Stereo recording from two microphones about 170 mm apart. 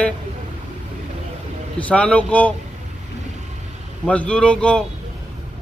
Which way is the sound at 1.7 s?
5° left (ahead or behind).